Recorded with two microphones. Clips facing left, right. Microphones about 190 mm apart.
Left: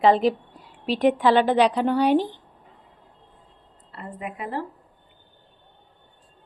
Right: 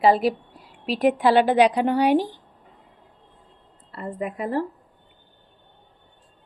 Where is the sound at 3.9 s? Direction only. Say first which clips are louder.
Right 5 dB; 40° right (ahead or behind).